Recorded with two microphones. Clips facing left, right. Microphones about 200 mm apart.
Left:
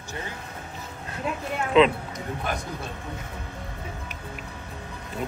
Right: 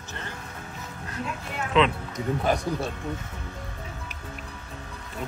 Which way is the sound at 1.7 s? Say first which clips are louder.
Left 4 dB; 5° left (ahead or behind).